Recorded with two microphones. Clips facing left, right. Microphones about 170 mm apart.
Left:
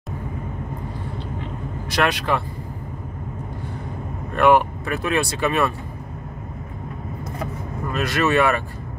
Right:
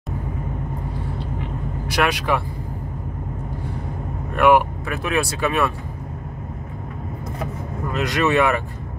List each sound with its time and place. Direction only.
1.9 s speech: 10° right (ahead or behind)
4.4 s speech: 10° right (ahead or behind)
7.9 s speech: 15° right (ahead or behind)